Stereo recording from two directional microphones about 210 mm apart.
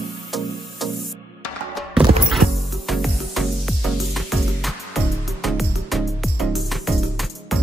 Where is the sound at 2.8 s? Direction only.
Centre (ahead or behind).